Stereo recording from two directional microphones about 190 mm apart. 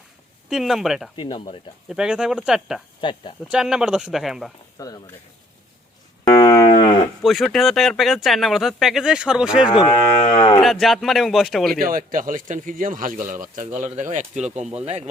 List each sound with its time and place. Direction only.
0.5 s speech: centre (ahead or behind)
1.1 s speech: 25° left (ahead or behind)
1.9 s speech: 5° right (ahead or behind)
3.0 s speech: 25° left (ahead or behind)
3.5 s speech: 5° right (ahead or behind)
4.8 s speech: 20° left (ahead or behind)
6.2 s cattle: 20° left (ahead or behind)
7.2 s speech: centre (ahead or behind)
9.6 s speech: 30° left (ahead or behind)
10.6 s speech: centre (ahead or behind)
11.8 s speech: 50° right (ahead or behind)